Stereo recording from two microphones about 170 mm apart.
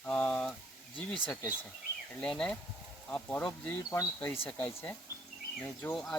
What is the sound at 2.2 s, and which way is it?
Speech, 5° left (ahead or behind).